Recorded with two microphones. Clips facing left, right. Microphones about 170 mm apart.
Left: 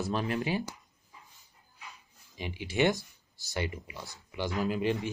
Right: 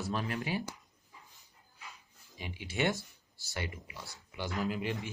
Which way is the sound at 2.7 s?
20° left (ahead or behind).